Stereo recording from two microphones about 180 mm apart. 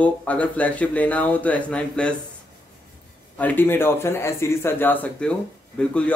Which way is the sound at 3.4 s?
10° left (ahead or behind).